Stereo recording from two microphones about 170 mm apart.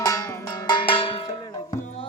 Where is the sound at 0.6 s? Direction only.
30° left (ahead or behind).